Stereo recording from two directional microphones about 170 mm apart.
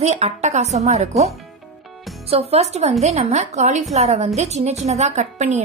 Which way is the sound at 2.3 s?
40° right (ahead or behind).